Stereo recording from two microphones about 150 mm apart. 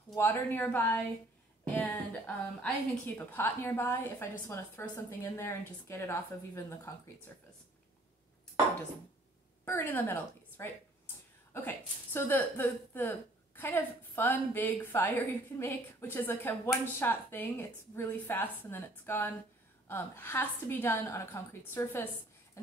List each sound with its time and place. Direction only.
0.1 s speech: 15° left (ahead or behind)
9.7 s speech: 10° left (ahead or behind)